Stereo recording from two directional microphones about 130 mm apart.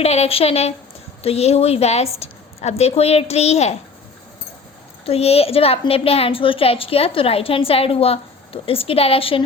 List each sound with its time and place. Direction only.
0.0 s a woman's voice: 55° left (ahead or behind)
5.0 s a woman's voice: 50° left (ahead or behind)